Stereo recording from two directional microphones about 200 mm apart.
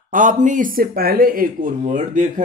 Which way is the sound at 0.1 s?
40° right (ahead or behind).